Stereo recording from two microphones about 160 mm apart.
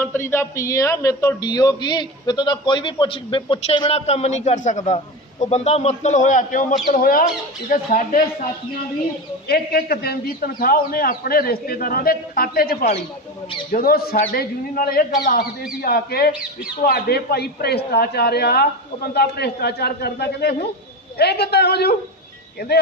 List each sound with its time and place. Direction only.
0.0 s a man's voice: 15° left (ahead or behind); by 8.2 s 60° left (ahead or behind)
9.5 s a man's voice: 75° left (ahead or behind)